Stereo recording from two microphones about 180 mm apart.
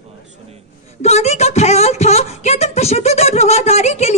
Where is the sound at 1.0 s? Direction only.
40° left (ahead or behind).